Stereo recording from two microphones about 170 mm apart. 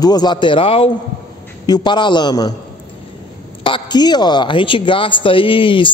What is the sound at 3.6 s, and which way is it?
A man's voice, 30° left (ahead or behind).